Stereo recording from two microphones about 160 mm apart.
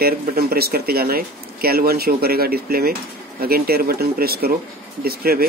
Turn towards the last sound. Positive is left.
turn(degrees=-70)  # may be behind; listen again after turning